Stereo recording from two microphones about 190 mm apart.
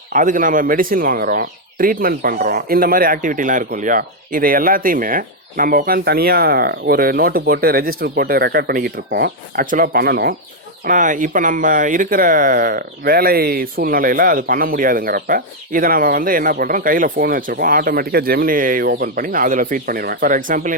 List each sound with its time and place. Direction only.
0.1 s speech: 45° right (ahead or behind)